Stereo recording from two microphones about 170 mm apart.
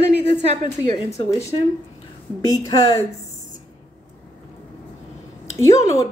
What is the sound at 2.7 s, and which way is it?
Speech, 20° left (ahead or behind).